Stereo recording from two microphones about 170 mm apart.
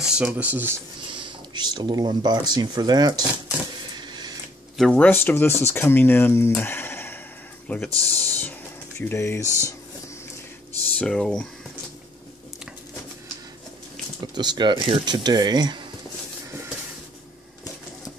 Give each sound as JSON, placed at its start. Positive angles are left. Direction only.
{"t": 0.0, "sound": "speech", "side_deg": -5}
{"t": 1.1, "sound": "speech", "side_deg": -25}
{"t": 4.1, "sound": "printer", "side_deg": -25}
{"t": 4.7, "sound": "speech", "side_deg": 5}
{"t": 6.5, "sound": "a sound", "side_deg": 10}
{"t": 7.6, "sound": "speech", "side_deg": 10}
{"t": 9.0, "sound": "speech", "side_deg": 15}
{"t": 9.4, "sound": "speech", "side_deg": -15}
{"t": 11.0, "sound": "speech", "side_deg": 5}
{"t": 14.2, "sound": "speech", "side_deg": -25}